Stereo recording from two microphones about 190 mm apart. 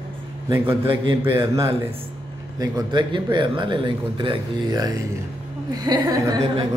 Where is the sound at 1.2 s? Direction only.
15° right (ahead or behind).